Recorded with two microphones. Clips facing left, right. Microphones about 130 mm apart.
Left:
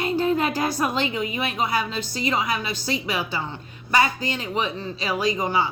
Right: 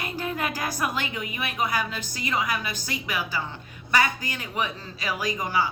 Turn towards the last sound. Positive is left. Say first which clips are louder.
# left 4 dB
turn(degrees=25)  # may be behind; listen again after turning